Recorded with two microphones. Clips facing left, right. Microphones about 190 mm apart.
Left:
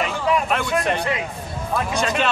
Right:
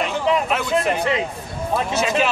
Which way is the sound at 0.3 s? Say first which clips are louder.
Right 1 dB; 25° right (ahead or behind).